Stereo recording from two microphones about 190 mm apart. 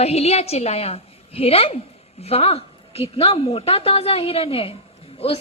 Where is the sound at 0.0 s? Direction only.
35° left (ahead or behind).